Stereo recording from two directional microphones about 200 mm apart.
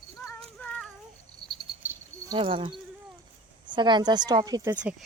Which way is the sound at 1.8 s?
10° right (ahead or behind).